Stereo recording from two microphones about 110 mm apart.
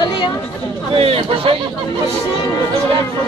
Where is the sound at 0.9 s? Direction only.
60° right (ahead or behind).